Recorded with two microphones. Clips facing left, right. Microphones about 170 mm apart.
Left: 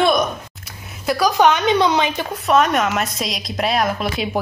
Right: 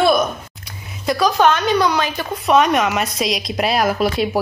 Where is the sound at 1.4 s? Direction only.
20° left (ahead or behind).